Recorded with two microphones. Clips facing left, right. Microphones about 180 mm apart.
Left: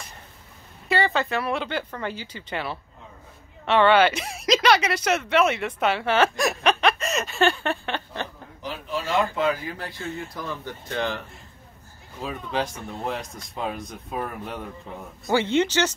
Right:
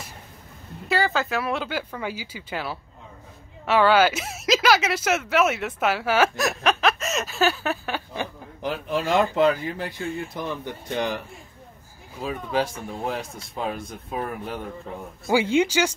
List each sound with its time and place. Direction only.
0.8 s speech: centre (ahead or behind)
9.2 s speech: 40° right (ahead or behind)
9.8 s speech: 20° right (ahead or behind)